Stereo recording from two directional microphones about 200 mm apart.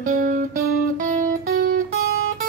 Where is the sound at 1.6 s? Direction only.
45° right (ahead or behind).